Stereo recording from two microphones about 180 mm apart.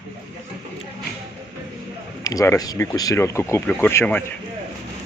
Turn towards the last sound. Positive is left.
turn(degrees=10)  # may be behind; listen again after turning